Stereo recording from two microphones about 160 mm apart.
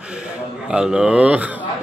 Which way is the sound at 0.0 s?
5° right (ahead or behind).